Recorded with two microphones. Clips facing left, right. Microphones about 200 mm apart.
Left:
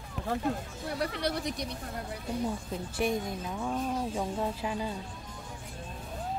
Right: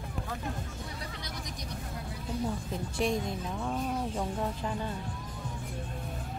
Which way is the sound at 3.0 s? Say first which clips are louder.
Even; 5° left (ahead or behind).